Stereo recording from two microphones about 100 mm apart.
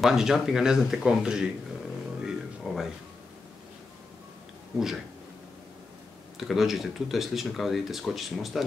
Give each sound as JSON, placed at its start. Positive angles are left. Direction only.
{"t": 0.0, "sound": "speech", "side_deg": -5}
{"t": 2.2, "sound": "a sound", "side_deg": 0}
{"t": 4.7, "sound": "speech", "side_deg": -5}
{"t": 6.3, "sound": "speech", "side_deg": 0}